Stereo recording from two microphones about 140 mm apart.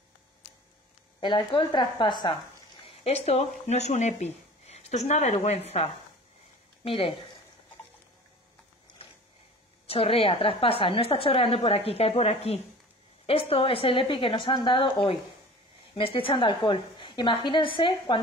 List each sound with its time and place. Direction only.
1.2 s a woman's voice: 35° left (ahead or behind)
3.0 s speech: 50° left (ahead or behind)
9.8 s a woman's voice: 40° left (ahead or behind)